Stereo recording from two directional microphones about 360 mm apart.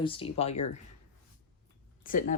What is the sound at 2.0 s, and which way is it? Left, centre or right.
Speech, left.